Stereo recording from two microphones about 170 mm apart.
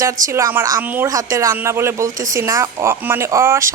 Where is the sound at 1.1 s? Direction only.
20° right (ahead or behind).